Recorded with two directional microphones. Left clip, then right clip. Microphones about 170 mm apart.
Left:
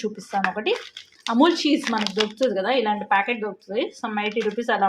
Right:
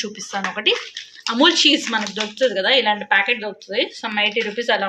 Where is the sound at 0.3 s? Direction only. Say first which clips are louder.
Right 3 dB; 45° left (ahead or behind).